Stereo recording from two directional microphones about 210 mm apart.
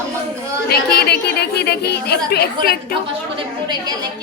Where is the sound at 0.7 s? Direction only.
50° left (ahead or behind).